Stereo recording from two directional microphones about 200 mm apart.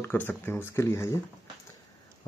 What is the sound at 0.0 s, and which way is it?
Speech, 10° left (ahead or behind).